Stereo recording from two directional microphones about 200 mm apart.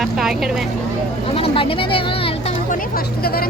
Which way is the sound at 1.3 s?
25° left (ahead or behind).